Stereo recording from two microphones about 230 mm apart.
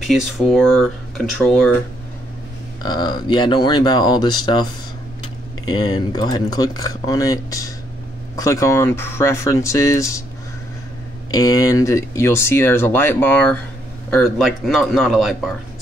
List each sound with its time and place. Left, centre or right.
0.0 s speech: centre
2.8 s speech: centre
11.3 s speech: centre